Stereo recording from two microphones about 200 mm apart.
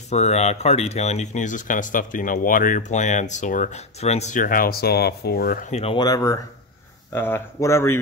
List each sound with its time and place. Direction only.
0.1 s speech: 35° left (ahead or behind)
5.7 s speech: 30° left (ahead or behind); by 8.0 s 15° left (ahead or behind)